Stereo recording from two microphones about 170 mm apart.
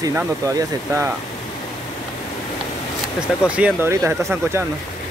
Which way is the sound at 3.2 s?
5° right (ahead or behind).